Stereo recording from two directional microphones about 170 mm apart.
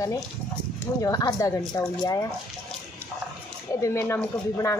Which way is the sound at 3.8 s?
15° left (ahead or behind).